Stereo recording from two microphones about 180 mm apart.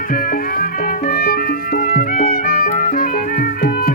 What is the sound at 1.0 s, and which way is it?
Music, 55° left (ahead or behind).